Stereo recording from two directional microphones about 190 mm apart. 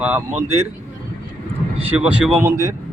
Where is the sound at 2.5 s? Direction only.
15° right (ahead or behind).